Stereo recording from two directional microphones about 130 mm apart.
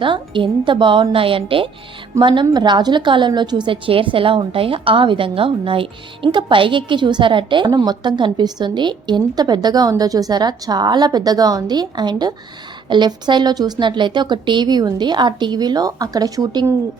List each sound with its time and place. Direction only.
0.0 s a woman's voice: 40° right (ahead or behind)